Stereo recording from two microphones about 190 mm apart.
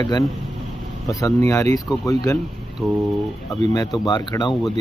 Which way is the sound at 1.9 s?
5° left (ahead or behind).